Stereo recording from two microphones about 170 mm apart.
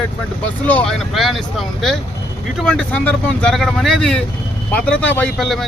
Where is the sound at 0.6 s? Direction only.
5° left (ahead or behind).